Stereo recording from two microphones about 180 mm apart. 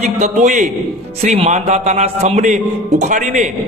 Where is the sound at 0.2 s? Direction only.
40° right (ahead or behind).